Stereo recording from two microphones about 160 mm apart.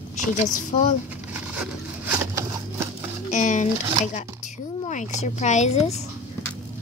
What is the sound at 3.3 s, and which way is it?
Speech, 50° left (ahead or behind).